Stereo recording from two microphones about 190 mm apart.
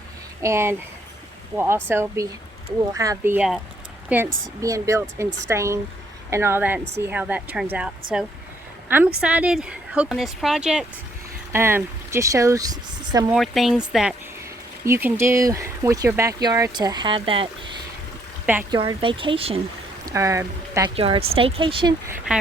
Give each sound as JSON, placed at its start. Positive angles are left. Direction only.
{"t": 0.4, "sound": "speech", "side_deg": -15}
{"t": 8.9, "sound": "a woman's voice", "side_deg": -10}
{"t": 13.3, "sound": "a woman's voice", "side_deg": 0}
{"t": 18.7, "sound": "speech", "side_deg": -25}
{"t": 20.1, "sound": "speech", "side_deg": -15}
{"t": 20.9, "sound": "speech", "side_deg": -30}